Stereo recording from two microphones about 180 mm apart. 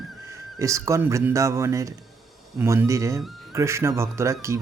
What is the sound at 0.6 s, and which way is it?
Speech, 15° right (ahead or behind).